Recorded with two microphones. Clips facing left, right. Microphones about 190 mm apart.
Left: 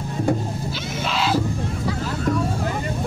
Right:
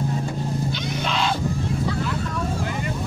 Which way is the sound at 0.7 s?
Centre (ahead or behind).